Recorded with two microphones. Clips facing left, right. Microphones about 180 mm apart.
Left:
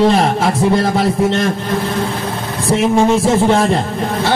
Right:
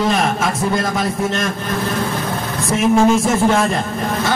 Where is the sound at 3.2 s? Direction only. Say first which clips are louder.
Left 3 dB; 30° left (ahead or behind).